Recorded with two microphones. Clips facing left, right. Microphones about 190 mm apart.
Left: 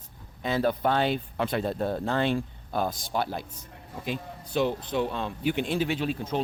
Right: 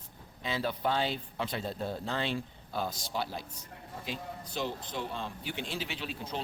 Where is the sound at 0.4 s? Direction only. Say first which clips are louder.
Left 7 dB; 50° left (ahead or behind).